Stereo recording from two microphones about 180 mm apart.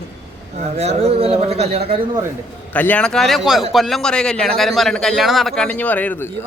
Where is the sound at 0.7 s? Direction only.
35° right (ahead or behind).